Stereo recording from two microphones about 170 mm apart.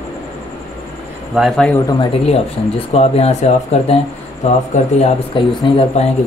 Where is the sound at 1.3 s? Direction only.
Centre (ahead or behind).